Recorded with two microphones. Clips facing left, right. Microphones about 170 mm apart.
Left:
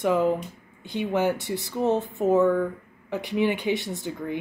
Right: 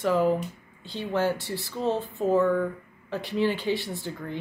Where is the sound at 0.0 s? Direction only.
20° left (ahead or behind).